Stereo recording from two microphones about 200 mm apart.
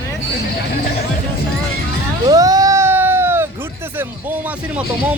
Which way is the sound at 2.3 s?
20° right (ahead or behind).